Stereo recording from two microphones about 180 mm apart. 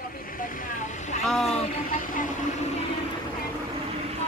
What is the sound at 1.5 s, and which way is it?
Speech, 35° left (ahead or behind).